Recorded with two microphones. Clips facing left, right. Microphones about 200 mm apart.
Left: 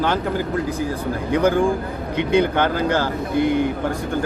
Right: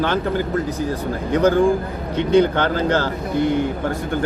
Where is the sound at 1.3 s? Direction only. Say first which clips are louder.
Right 2 dB; 10° left (ahead or behind).